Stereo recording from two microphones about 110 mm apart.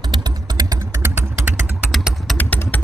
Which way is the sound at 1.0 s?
25° right (ahead or behind).